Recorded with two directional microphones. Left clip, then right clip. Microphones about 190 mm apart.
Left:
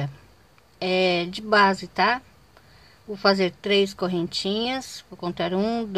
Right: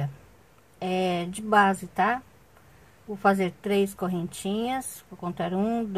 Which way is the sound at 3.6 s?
20° left (ahead or behind).